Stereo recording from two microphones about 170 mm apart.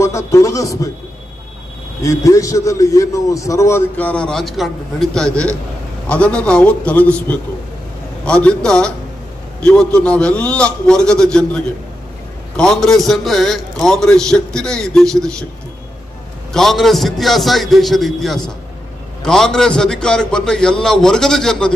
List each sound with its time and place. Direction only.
0.0 s a man's voice: 20° left (ahead or behind)
2.0 s a man's voice: 20° left (ahead or behind); by 15.3 s 5° left (ahead or behind)
16.5 s a man's voice: centre (ahead or behind)